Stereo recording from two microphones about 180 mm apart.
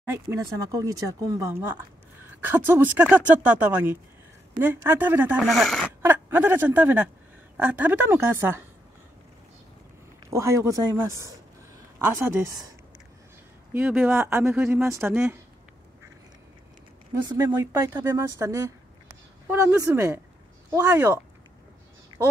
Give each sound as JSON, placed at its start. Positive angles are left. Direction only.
{"t": 0.0, "sound": "speech", "side_deg": -15}
{"t": 5.4, "sound": "speech", "side_deg": 0}
{"t": 6.0, "sound": "a woman's voice", "side_deg": -10}
{"t": 10.3, "sound": "speech", "side_deg": -15}
{"t": 13.7, "sound": "speech", "side_deg": -10}
{"t": 17.1, "sound": "speech", "side_deg": -20}